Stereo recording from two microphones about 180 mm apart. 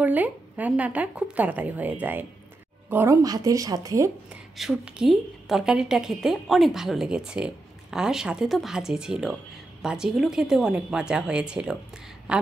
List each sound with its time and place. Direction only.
0.0 s a woman's voice: 10° right (ahead or behind)
4.3 s a woman's voice: 5° right (ahead or behind)